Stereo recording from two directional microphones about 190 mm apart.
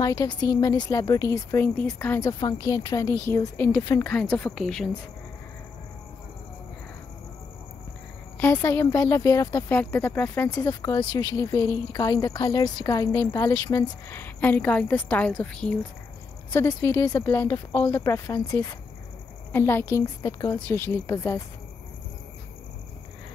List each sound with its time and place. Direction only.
0.0 s speech: 20° left (ahead or behind); by 4.9 s 5° left (ahead or behind)
8.5 s speech: 15° left (ahead or behind)